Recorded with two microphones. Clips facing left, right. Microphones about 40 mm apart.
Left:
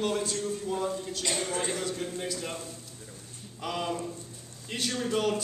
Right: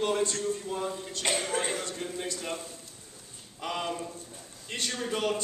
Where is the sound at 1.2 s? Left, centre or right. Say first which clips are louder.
Right 3 dB; right.